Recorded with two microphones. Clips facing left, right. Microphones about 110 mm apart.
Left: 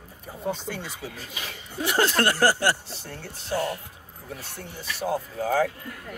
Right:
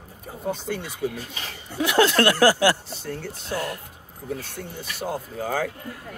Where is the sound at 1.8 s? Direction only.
90° right.